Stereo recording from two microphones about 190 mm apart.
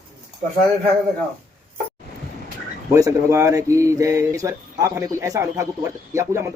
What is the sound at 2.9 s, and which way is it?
Speech, 15° right (ahead or behind).